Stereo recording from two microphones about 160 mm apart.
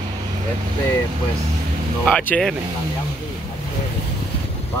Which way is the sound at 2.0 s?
10° left (ahead or behind).